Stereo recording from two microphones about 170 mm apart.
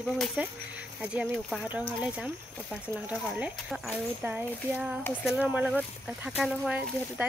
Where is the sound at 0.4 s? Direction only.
10° right (ahead or behind).